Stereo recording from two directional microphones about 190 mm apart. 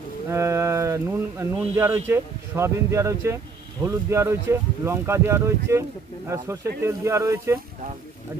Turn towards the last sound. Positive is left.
turn(degrees=-15)  # may be behind; listen again after turning